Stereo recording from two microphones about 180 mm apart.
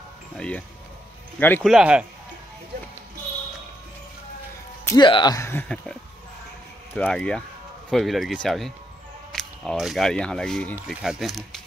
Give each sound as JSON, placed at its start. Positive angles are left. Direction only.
{"t": 0.4, "sound": "speech", "side_deg": 5}
{"t": 1.7, "sound": "speech", "side_deg": -5}
{"t": 4.8, "sound": "speech", "side_deg": 25}
{"t": 7.0, "sound": "speech", "side_deg": 5}